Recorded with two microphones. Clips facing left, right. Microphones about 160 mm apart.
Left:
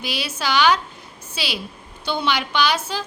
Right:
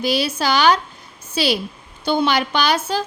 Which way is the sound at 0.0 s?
40° right (ahead or behind).